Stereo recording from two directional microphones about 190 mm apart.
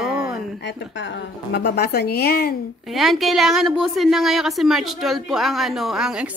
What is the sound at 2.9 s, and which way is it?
A woman's voice, centre (ahead or behind).